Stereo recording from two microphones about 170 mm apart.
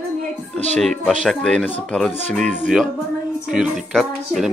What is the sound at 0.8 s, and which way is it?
Speech, centre (ahead or behind).